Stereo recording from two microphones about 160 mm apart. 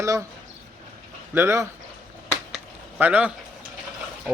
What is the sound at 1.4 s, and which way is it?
Speech, 15° right (ahead or behind).